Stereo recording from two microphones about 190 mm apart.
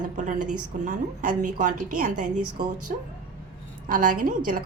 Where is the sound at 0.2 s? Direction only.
40° right (ahead or behind).